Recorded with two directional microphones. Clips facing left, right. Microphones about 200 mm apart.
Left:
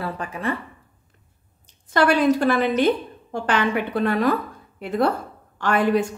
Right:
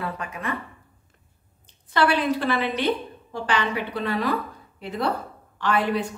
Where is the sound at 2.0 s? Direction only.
45° left (ahead or behind).